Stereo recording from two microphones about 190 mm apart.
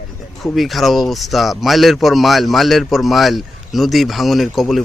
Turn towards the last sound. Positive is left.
turn(degrees=0)  # may be behind; listen again after turning